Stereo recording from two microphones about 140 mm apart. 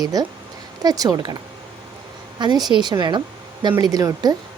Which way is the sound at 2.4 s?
30° right (ahead or behind).